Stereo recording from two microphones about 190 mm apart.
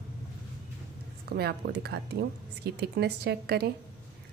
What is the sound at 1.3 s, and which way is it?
Speech, 55° right (ahead or behind).